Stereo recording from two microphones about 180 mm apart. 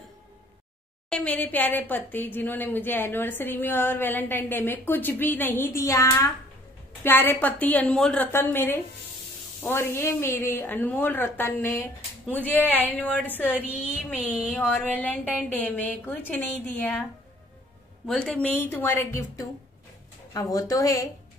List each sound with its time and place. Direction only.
1.1 s a woman's voice: 10° left (ahead or behind)
14.3 s speech: centre (ahead or behind)
14.9 s a woman's voice: 10° left (ahead or behind)
18.0 s a woman's voice: 5° left (ahead or behind); by 21.1 s 20° left (ahead or behind)